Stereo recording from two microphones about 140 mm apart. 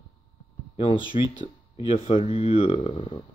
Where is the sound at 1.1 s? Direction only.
50° left (ahead or behind).